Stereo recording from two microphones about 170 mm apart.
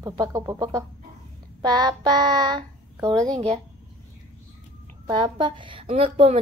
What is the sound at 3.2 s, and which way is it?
Speech, 25° right (ahead or behind).